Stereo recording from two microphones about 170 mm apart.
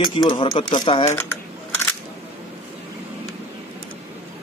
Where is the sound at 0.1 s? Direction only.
30° left (ahead or behind).